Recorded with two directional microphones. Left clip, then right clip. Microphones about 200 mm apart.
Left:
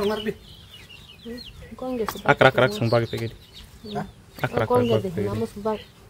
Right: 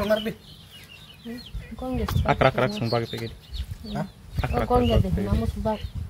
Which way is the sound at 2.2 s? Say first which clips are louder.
Left 4 dB; 25° left (ahead or behind).